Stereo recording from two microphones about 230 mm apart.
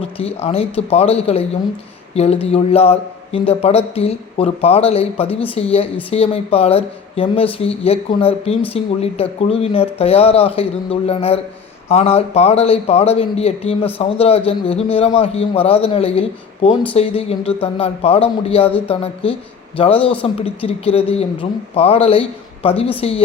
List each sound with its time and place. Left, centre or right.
0.2 s speech: left